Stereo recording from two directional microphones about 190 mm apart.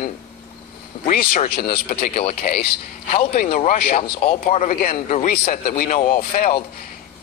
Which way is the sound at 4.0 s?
30° left (ahead or behind).